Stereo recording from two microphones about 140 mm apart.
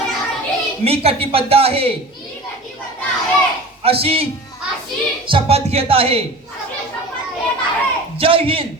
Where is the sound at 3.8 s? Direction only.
40° right (ahead or behind).